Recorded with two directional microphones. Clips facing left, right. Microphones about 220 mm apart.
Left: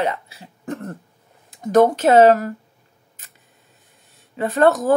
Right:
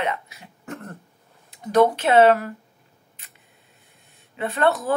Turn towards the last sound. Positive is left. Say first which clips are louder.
# left 6 dB
turn(degrees=45)  # may be behind; listen again after turning